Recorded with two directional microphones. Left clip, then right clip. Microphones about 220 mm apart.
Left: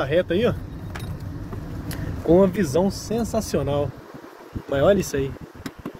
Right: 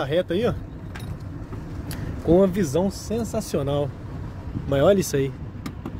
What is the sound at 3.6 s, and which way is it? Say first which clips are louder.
Speech: left 1 dB; 25° right (ahead or behind).